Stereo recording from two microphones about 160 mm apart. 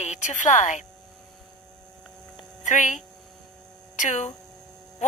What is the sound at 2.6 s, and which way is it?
Speech, 50° left (ahead or behind).